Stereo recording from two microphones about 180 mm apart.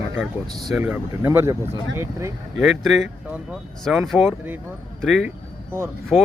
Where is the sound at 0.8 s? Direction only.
10° right (ahead or behind).